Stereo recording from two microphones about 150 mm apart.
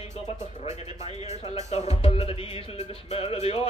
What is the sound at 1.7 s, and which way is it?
Music, 40° left (ahead or behind).